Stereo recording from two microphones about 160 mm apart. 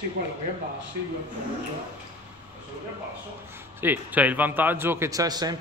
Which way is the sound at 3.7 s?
10° right (ahead or behind).